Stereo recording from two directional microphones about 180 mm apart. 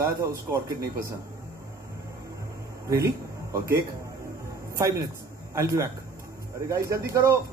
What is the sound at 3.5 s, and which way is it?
A man's voice, 15° right (ahead or behind).